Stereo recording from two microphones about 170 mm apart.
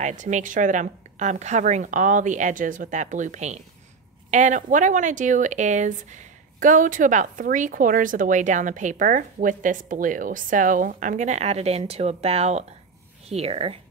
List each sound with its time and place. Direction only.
0.0 s a woman's voice: 45° right (ahead or behind)